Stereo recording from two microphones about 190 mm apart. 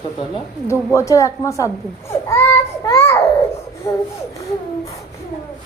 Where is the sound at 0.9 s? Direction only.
15° left (ahead or behind).